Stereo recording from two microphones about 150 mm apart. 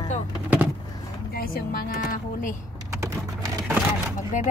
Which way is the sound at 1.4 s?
80° left.